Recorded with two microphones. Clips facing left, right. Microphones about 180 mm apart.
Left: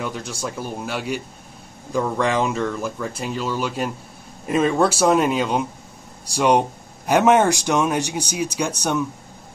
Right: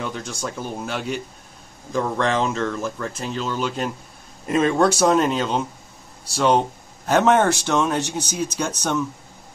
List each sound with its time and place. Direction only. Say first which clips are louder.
0.0 s speech: left 1 dB; 5° left (ahead or behind)